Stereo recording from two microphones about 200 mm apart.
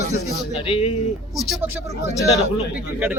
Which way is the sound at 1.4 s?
Centre (ahead or behind).